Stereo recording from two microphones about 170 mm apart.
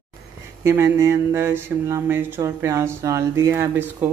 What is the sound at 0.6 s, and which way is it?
Speech, 15° right (ahead or behind).